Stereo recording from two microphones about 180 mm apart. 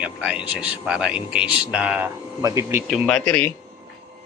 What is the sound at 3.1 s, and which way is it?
Speech, 10° left (ahead or behind).